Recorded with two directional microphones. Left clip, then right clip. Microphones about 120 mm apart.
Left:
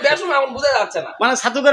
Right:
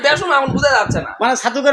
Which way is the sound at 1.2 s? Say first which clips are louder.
Right 1 dB; 5° right (ahead or behind).